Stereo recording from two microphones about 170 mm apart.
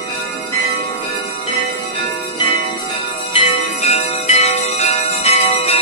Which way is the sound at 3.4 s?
35° left (ahead or behind).